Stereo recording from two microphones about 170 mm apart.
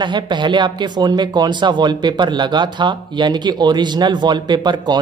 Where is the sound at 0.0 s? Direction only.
25° right (ahead or behind).